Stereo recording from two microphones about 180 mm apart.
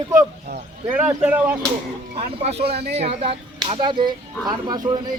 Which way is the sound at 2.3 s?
35° right (ahead or behind).